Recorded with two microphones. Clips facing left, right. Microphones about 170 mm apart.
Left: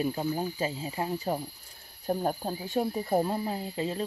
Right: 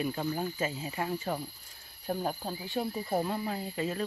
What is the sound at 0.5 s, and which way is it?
Speech, 30° left (ahead or behind).